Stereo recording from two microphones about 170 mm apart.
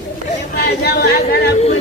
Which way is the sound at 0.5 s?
70° left (ahead or behind).